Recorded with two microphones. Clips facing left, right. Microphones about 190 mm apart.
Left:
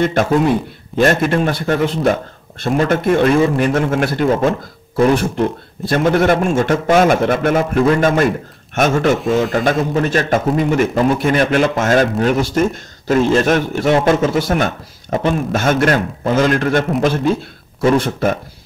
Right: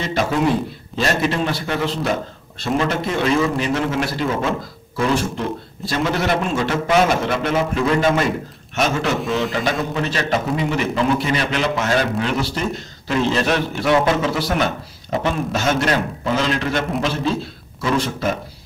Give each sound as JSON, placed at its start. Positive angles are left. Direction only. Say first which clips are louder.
{"t": 0.0, "sound": "a man's voice", "louder": "left 5 dB", "side_deg": 50}